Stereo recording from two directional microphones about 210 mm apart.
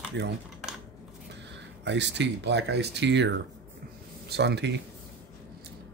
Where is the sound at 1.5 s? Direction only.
55° right (ahead or behind).